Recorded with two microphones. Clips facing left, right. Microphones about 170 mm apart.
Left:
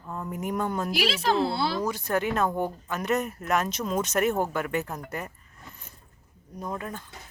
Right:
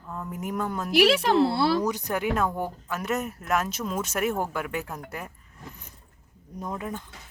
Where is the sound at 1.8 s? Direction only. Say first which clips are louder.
Even; 15° right (ahead or behind).